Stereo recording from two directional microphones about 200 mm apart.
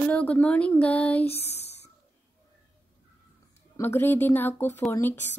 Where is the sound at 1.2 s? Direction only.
30° left (ahead or behind).